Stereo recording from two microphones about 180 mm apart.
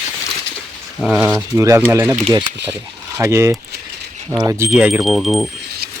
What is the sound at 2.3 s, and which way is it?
Speech, 30° right (ahead or behind).